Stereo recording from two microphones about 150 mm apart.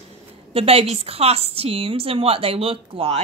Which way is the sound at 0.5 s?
40° right (ahead or behind).